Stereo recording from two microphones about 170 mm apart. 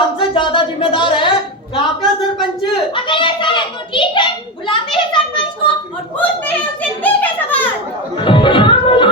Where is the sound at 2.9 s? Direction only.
30° left (ahead or behind).